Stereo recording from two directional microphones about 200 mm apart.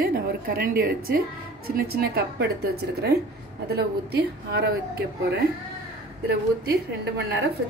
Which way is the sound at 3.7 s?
50° right (ahead or behind).